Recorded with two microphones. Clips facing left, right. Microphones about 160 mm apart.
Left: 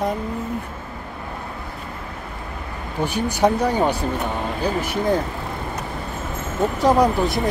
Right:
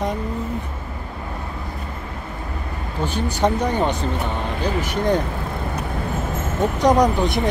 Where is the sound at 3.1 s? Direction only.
10° left (ahead or behind).